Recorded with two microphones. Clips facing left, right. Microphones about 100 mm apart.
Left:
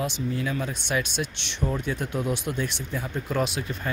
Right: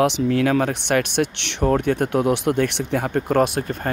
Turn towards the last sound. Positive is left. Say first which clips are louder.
# right 8 dB
turn(degrees=-50)  # may be behind; listen again after turning